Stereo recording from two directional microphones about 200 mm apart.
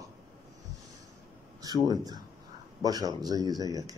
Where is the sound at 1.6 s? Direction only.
20° right (ahead or behind).